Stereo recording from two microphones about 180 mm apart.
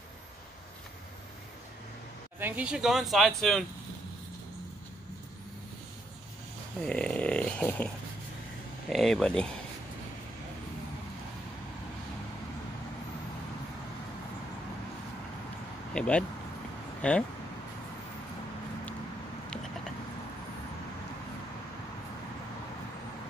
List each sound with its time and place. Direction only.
2.3 s speech: 10° right (ahead or behind)
6.9 s a sound: 5° left (ahead or behind)
8.8 s speech: centre (ahead or behind)
15.9 s speech: 5° left (ahead or behind)